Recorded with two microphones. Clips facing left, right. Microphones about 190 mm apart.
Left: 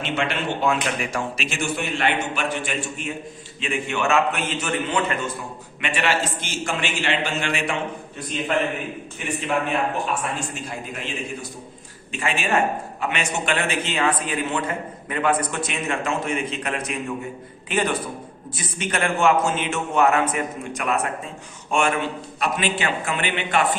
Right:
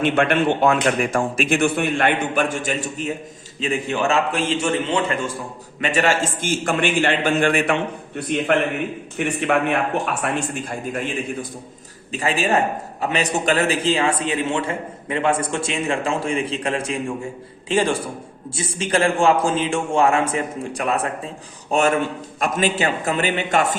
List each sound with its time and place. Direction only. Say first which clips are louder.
0.0 s a man's voice: right 8 dB; 55° right (ahead or behind); by 5.3 s 30° right (ahead or behind)
5.8 s a man's voice: right 4 dB; 45° right (ahead or behind); by 9.7 s 65° right (ahead or behind)
10.2 s a man's voice: right 5 dB; 50° right (ahead or behind)
12.1 s a man's voice: right 3 dB; 35° right (ahead or behind)